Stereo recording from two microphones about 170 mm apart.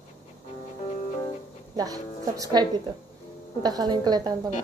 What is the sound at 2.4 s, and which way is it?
A woman's voice, 25° right (ahead or behind).